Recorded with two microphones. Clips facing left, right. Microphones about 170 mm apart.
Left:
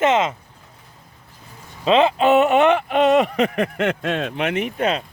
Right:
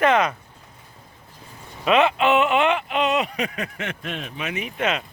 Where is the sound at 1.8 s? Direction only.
30° left (ahead or behind); by 4.7 s 55° left (ahead or behind).